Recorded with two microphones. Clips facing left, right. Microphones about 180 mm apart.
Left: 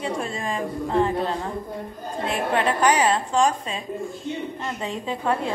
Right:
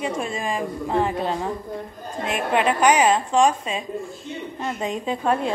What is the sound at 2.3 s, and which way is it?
A woman's voice, 15° right (ahead or behind).